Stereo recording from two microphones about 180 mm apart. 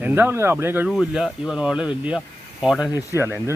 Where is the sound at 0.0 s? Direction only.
10° right (ahead or behind).